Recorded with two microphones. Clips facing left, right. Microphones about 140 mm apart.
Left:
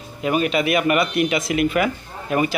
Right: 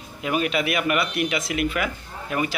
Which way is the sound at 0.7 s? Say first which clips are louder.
Left 5 dB; 45° left (ahead or behind).